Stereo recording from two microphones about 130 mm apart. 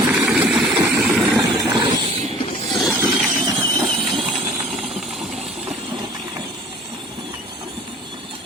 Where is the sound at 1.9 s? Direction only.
45° right (ahead or behind).